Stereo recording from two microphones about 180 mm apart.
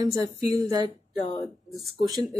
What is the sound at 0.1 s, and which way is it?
Speech, 20° right (ahead or behind).